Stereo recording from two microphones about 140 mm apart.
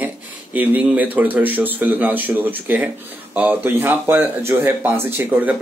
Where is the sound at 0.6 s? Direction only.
10° right (ahead or behind).